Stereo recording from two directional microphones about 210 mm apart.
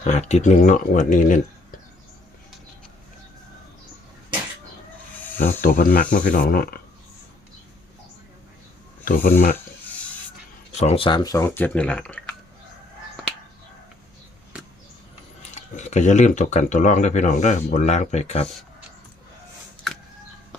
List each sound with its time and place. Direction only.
0.0 s speech: 35° left (ahead or behind)
5.5 s speech: 40° left (ahead or behind)
9.0 s speech: 40° left (ahead or behind)
10.8 s speech: 30° left (ahead or behind); by 12.2 s 5° left (ahead or behind)
15.7 s speech: 35° left (ahead or behind)